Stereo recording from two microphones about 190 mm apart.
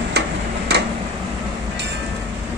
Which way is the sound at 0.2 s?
60° right (ahead or behind).